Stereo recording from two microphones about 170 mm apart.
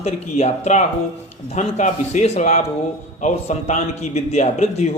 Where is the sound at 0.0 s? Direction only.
40° left (ahead or behind).